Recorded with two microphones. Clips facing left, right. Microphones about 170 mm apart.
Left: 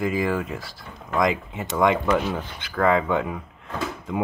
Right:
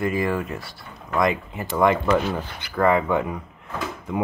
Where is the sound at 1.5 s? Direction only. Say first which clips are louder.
Right 1 dB; 20° left (ahead or behind).